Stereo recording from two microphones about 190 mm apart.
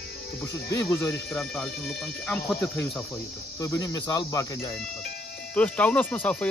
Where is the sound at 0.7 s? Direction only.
15° left (ahead or behind).